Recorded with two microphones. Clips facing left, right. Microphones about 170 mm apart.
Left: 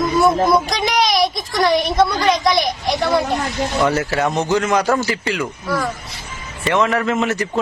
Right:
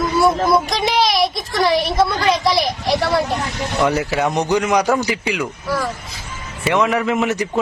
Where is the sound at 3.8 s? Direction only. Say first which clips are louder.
Right 1 dB; 15° right (ahead or behind).